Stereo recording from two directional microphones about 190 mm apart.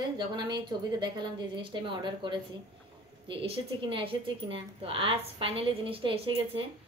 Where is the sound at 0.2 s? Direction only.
25° right (ahead or behind).